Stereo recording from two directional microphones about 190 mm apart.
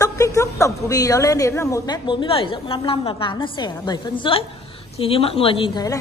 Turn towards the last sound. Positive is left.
turn(degrees=25)  # may be behind; listen again after turning